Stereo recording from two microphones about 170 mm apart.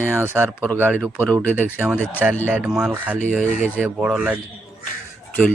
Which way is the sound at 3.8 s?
5° right (ahead or behind).